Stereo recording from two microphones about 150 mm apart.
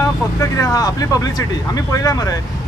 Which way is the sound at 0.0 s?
20° left (ahead or behind).